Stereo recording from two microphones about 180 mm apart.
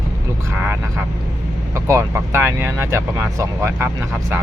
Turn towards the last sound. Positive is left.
turn(degrees=-15)  # may be behind; listen again after turning